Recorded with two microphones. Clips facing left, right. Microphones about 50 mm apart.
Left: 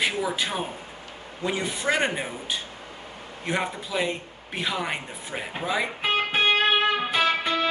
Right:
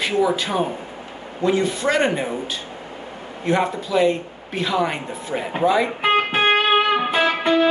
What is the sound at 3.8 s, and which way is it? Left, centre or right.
A man's voice, centre.